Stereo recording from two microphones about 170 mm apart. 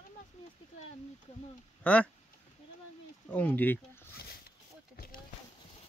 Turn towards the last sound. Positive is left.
turn(degrees=65)  # may be behind; listen again after turning